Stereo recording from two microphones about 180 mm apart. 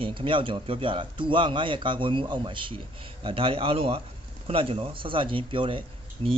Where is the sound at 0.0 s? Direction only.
30° right (ahead or behind).